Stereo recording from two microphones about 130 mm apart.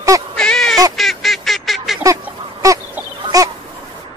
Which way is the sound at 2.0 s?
25° right (ahead or behind).